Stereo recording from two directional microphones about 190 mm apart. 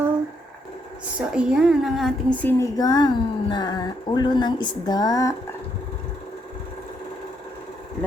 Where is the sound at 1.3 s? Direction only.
5° right (ahead or behind); by 5.3 s 20° left (ahead or behind).